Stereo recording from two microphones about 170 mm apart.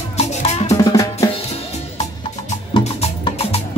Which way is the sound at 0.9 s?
20° left (ahead or behind).